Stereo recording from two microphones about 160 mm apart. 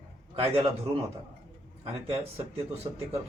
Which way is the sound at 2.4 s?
40° right (ahead or behind).